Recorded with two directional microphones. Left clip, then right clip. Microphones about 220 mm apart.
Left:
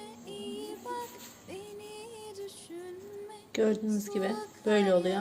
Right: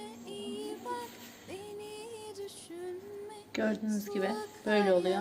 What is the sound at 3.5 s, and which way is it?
Speech, 20° left (ahead or behind).